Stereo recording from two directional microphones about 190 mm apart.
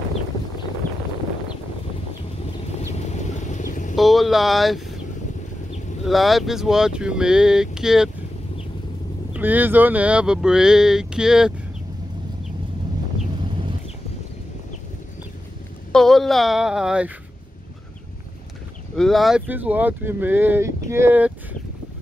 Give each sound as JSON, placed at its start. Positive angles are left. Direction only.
{"t": 3.1, "sound": "vehicle", "side_deg": 40}
{"t": 3.9, "sound": "speech", "side_deg": 0}
{"t": 6.0, "sound": "speech", "side_deg": 0}
{"t": 9.3, "sound": "speech", "side_deg": -10}
{"t": 15.9, "sound": "speech", "side_deg": 0}
{"t": 18.9, "sound": "speech", "side_deg": 0}